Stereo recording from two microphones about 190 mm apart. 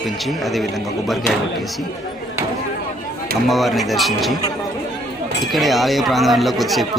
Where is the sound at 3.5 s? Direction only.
Centre (ahead or behind).